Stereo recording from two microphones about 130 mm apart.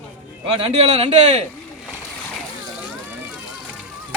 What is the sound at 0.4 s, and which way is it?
A man's voice, 50° right (ahead or behind).